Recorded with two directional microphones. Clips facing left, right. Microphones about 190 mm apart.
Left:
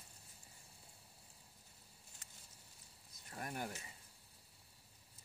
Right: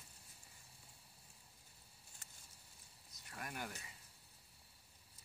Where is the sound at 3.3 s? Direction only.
30° left (ahead or behind).